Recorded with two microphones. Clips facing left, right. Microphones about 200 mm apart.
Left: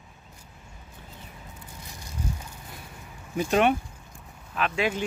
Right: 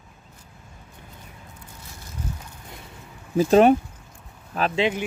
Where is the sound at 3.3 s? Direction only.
35° right (ahead or behind).